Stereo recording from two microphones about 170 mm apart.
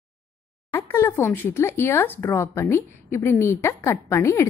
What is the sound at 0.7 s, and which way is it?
Speech, 15° left (ahead or behind).